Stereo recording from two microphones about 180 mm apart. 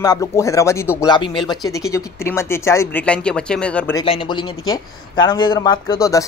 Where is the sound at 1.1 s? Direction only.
25° left (ahead or behind); by 3.9 s 5° left (ahead or behind).